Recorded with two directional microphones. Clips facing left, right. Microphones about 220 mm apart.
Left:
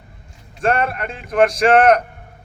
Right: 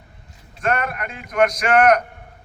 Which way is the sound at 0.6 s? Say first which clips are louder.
Left 4 dB; 30° left (ahead or behind).